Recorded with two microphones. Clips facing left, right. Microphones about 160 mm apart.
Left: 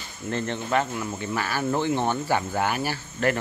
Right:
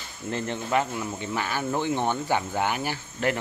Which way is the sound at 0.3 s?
15° right (ahead or behind).